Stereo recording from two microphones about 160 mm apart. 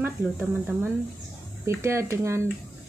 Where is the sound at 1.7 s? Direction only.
15° right (ahead or behind).